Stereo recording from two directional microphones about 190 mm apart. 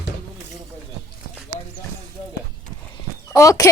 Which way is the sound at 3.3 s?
15° left (ahead or behind).